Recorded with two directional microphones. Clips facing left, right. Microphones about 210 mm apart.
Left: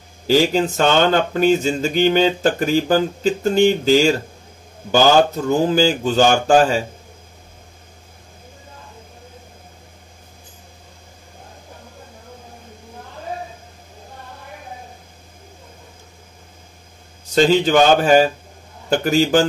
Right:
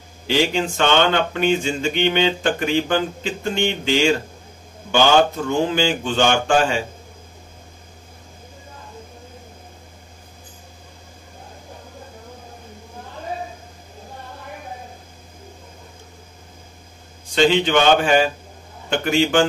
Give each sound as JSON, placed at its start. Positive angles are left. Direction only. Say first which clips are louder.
{"t": 0.3, "sound": "speech", "louder": "left 4 dB", "side_deg": 40}
{"t": 17.3, "sound": "speech", "louder": "left 2 dB", "side_deg": 40}